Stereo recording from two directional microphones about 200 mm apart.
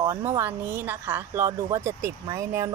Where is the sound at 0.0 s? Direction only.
15° right (ahead or behind).